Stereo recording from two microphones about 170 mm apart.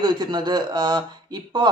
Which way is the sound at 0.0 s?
25° right (ahead or behind).